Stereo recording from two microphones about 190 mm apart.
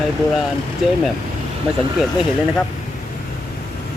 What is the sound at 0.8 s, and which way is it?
Speech, centre (ahead or behind).